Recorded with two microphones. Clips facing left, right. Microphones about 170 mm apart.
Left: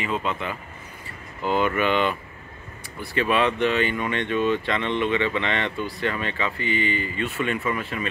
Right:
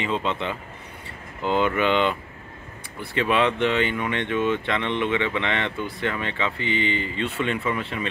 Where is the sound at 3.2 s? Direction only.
20° right (ahead or behind).